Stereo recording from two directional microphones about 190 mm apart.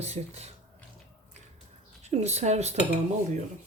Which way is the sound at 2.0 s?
35° right (ahead or behind).